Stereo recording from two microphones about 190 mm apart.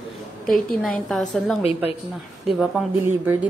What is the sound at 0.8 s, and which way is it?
Speech, centre (ahead or behind).